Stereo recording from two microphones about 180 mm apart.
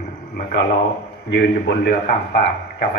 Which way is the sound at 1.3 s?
65° left (ahead or behind).